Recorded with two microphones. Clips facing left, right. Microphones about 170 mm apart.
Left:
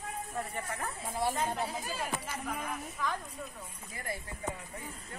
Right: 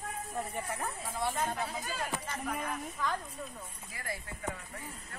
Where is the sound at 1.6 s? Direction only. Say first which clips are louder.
Left 1 dB; 5° left (ahead or behind).